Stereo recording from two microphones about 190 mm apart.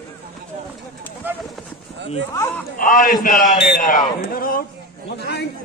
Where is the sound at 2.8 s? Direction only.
45° left (ahead or behind).